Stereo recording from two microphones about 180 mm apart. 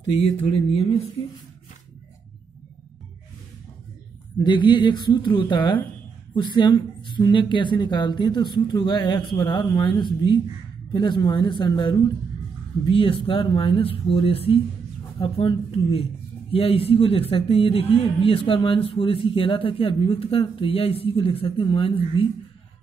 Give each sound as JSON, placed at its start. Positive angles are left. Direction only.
{"t": 0.5, "sound": "speech", "side_deg": 30}
{"t": 4.4, "sound": "speech", "side_deg": 25}